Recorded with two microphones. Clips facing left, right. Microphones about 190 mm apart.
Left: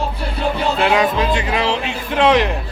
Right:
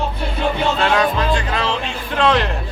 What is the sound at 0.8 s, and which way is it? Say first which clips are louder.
Speech: left 3 dB; 15° left (ahead or behind).